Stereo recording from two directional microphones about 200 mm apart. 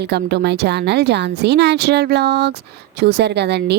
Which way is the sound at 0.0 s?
55° right (ahead or behind).